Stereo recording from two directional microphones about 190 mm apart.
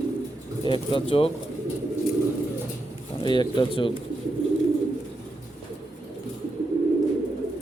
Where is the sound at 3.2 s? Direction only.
25° left (ahead or behind).